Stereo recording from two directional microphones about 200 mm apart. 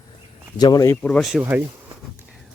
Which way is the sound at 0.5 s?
20° left (ahead or behind).